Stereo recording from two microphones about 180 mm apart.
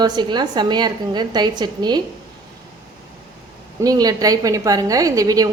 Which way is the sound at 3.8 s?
20° right (ahead or behind).